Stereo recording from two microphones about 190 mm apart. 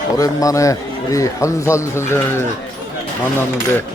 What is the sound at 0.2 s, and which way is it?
Speech, 15° left (ahead or behind).